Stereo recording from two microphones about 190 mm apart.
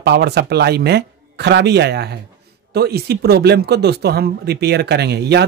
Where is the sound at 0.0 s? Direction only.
60° right (ahead or behind).